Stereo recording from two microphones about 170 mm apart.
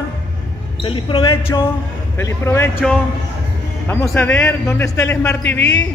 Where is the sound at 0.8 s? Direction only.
30° left (ahead or behind).